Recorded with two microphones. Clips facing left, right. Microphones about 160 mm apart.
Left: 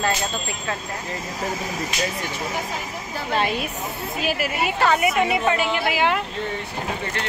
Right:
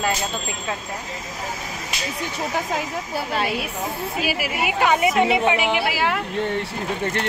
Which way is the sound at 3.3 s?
10° right (ahead or behind).